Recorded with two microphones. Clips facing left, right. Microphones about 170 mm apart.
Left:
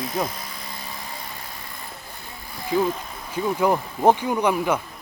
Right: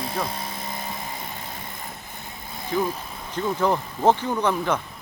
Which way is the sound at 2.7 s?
15° left (ahead or behind).